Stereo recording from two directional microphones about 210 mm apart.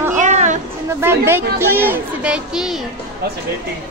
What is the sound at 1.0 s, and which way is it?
Speech, 10° right (ahead or behind).